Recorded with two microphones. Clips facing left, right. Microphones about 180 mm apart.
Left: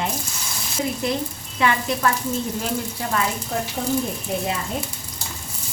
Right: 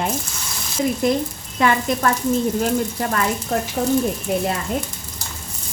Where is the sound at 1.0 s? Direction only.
45° right (ahead or behind).